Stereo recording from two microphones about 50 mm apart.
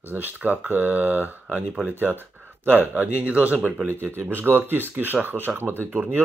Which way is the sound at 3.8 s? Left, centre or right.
Right.